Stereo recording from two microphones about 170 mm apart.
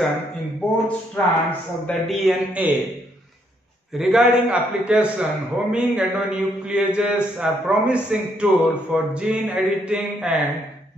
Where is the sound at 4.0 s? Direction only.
Centre (ahead or behind).